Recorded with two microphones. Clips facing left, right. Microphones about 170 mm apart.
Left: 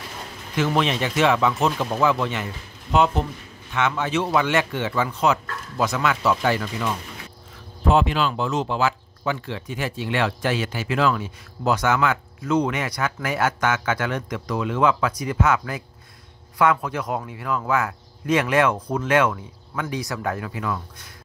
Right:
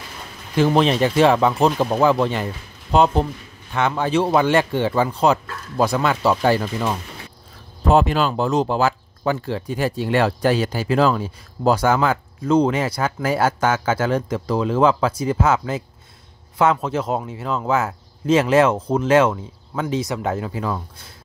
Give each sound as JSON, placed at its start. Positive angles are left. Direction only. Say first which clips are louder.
{"t": 0.6, "sound": "a man's voice", "louder": "right 6 dB", "side_deg": -35}